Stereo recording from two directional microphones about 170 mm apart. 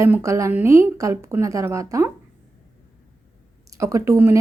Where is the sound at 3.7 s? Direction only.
20° right (ahead or behind).